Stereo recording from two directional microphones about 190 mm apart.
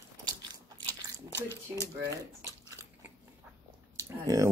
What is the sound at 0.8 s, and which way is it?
Biting, 15° left (ahead or behind).